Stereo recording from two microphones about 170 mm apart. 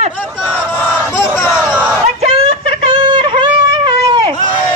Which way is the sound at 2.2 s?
30° right (ahead or behind).